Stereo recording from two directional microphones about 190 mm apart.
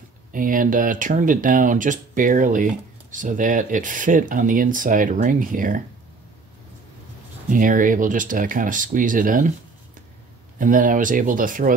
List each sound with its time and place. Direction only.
0.3 s speech: 45° right (ahead or behind)
7.5 s speech: 45° right (ahead or behind)
10.6 s speech: 45° right (ahead or behind)